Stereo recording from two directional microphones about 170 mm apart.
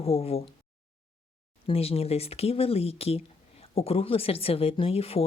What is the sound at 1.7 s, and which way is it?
Speech, 35° left (ahead or behind).